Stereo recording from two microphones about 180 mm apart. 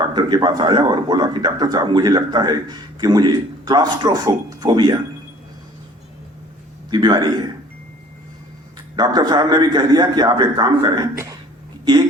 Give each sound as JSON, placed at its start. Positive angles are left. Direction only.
{"t": 0.0, "sound": "speech", "side_deg": -25}
{"t": 6.9, "sound": "speech", "side_deg": -25}
{"t": 9.0, "sound": "speech", "side_deg": -25}